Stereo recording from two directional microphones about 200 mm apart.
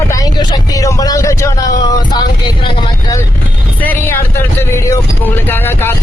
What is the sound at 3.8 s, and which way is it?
Speech, 10° left (ahead or behind).